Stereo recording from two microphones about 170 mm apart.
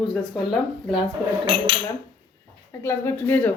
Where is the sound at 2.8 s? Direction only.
15° left (ahead or behind).